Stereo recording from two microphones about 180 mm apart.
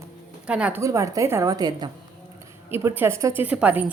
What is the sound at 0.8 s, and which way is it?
A woman's voice, 15° right (ahead or behind).